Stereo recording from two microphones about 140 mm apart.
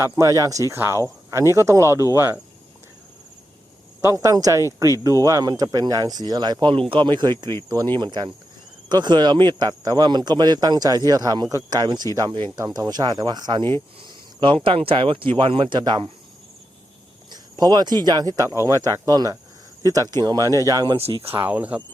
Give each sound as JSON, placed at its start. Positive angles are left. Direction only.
{"t": 0.0, "sound": "speech", "side_deg": -25}
{"t": 4.0, "sound": "speech", "side_deg": -25}
{"t": 17.3, "sound": "speech", "side_deg": -30}
{"t": 20.9, "sound": "speech", "side_deg": -40}
{"t": 21.3, "sound": "speech", "side_deg": -15}